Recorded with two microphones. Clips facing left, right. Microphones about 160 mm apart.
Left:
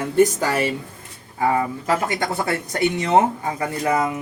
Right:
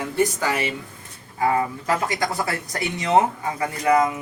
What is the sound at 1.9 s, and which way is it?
Speech, 25° left (ahead or behind).